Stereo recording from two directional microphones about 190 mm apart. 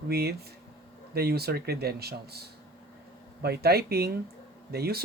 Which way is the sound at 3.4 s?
55° right (ahead or behind).